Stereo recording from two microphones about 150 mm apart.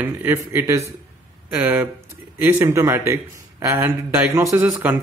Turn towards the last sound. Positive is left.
turn(degrees=-10)  # may be behind; listen again after turning